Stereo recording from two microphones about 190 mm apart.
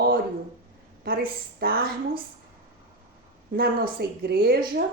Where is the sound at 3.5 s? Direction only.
50° right (ahead or behind).